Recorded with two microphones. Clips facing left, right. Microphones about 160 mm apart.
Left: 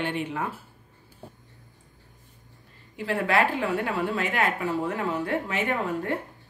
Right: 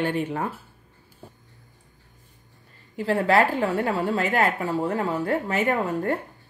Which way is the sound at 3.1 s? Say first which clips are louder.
Right 4 dB; 40° right (ahead or behind).